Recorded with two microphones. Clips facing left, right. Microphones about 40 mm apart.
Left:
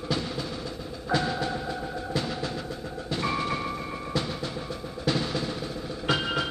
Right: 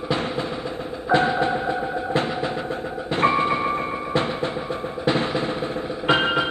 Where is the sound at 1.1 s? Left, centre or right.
Right.